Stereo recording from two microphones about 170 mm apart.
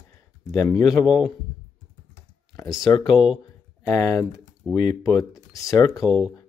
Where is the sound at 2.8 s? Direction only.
25° left (ahead or behind).